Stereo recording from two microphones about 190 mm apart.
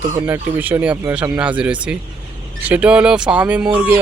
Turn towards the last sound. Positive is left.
turn(degrees=-5)  # may be behind; listen again after turning